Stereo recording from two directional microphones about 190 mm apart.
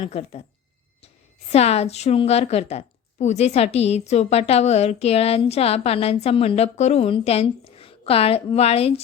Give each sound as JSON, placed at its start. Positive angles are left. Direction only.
{"t": 0.0, "sound": "a woman's voice", "side_deg": 30}
{"t": 1.5, "sound": "a woman's voice", "side_deg": 35}